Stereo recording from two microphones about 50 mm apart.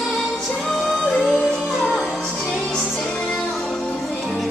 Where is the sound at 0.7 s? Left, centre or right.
Centre.